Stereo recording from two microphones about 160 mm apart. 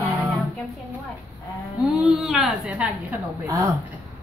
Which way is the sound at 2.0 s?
5° right (ahead or behind).